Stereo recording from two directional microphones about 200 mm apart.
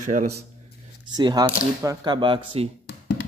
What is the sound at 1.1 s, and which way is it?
Speech, 20° right (ahead or behind).